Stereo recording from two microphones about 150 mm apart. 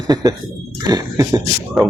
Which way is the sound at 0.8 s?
25° right (ahead or behind).